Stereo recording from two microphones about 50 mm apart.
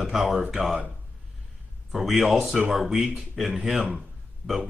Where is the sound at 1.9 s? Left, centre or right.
Centre.